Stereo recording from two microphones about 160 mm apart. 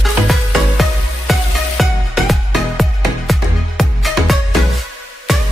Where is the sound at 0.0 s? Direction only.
Centre (ahead or behind).